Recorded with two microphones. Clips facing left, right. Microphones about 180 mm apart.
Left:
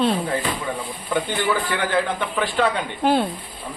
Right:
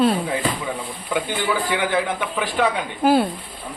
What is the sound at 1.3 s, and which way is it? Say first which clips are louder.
A woman's voice: even; 15° right (ahead or behind).